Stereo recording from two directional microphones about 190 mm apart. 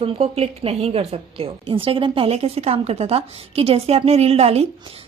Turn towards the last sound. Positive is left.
turn(degrees=-30)  # may be behind; listen again after turning